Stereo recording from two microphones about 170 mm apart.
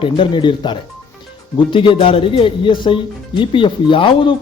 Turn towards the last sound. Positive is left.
turn(degrees=30)  # may be behind; listen again after turning